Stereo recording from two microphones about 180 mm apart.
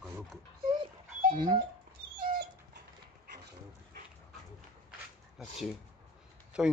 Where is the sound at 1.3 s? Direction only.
25° right (ahead or behind).